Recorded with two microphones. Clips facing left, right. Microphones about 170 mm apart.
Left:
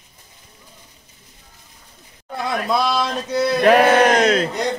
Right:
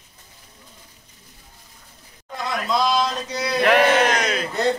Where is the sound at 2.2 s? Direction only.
60° left (ahead or behind).